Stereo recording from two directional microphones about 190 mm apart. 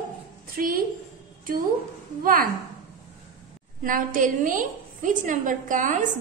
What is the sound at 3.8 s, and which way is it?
A woman's voice, 45° right (ahead or behind).